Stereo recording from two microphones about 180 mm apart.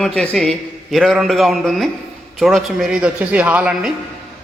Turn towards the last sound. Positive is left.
turn(degrees=-5)  # may be behind; listen again after turning